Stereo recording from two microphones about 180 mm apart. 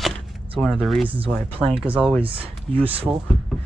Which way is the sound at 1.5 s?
30° right (ahead or behind).